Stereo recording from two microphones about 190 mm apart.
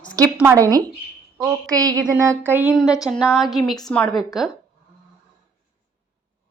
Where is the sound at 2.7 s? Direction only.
Centre (ahead or behind).